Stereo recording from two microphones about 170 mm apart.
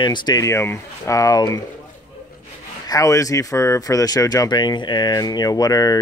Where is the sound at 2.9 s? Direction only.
20° left (ahead or behind).